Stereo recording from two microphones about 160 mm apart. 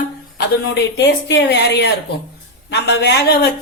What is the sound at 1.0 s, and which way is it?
Speech, 90° left.